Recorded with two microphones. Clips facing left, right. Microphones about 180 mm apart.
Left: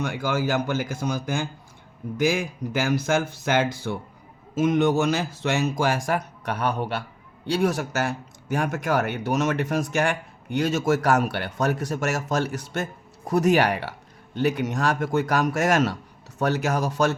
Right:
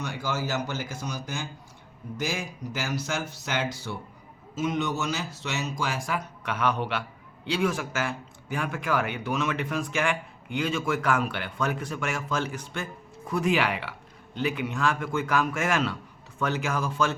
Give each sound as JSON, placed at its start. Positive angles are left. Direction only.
{"t": 0.0, "sound": "speech", "side_deg": 55}
{"t": 6.4, "sound": "a man's voice", "side_deg": 35}